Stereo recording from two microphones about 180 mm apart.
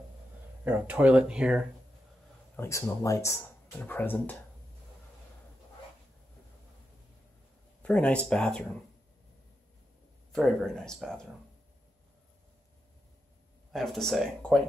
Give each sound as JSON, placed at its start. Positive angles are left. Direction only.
{"t": 0.7, "sound": "speech", "side_deg": -10}
{"t": 2.5, "sound": "speech", "side_deg": 15}
{"t": 7.8, "sound": "speech", "side_deg": 5}
{"t": 10.3, "sound": "speech", "side_deg": 5}
{"t": 13.7, "sound": "speech", "side_deg": 0}